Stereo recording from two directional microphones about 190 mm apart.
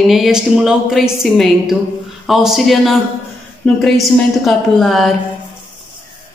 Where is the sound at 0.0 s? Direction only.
Centre (ahead or behind).